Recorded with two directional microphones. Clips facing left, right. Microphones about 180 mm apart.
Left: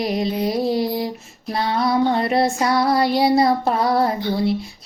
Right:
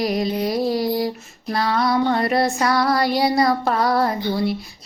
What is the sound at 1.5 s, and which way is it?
Child singing, 25° left (ahead or behind).